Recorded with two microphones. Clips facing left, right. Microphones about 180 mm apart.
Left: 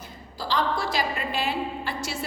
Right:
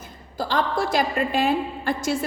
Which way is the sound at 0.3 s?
50° right (ahead or behind).